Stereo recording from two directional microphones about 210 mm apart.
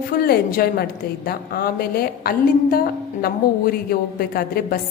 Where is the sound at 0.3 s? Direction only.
45° left (ahead or behind).